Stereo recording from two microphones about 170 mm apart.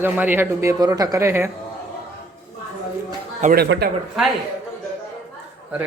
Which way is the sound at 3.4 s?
55° right (ahead or behind).